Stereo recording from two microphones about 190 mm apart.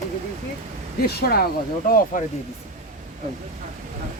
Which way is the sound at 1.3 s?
50° left (ahead or behind).